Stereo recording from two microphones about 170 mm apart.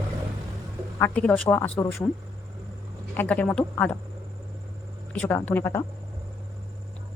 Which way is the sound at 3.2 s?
10° left (ahead or behind).